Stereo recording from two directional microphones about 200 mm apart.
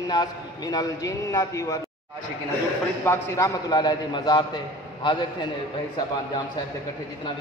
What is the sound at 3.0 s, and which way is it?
A man's voice, 15° left (ahead or behind).